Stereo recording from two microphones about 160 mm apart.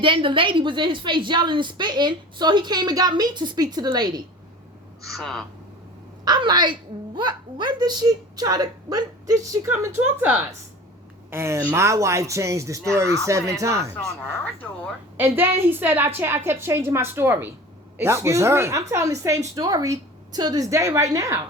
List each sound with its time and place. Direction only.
0.0 s a child's voice: 30° right (ahead or behind)
5.0 s speech: centre (ahead or behind)
6.2 s a child's voice: 25° right (ahead or behind)
15.2 s a woman's voice: 15° right (ahead or behind)